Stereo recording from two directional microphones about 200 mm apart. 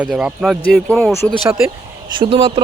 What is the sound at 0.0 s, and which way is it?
Speech, 5° right (ahead or behind).